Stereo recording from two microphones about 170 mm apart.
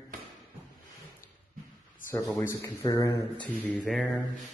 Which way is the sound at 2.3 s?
20° left (ahead or behind).